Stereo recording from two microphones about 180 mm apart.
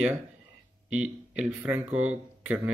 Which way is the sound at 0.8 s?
5° right (ahead or behind).